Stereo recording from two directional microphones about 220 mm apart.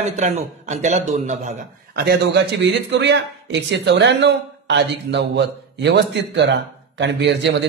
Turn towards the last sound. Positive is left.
turn(degrees=-50)  # may be behind; listen again after turning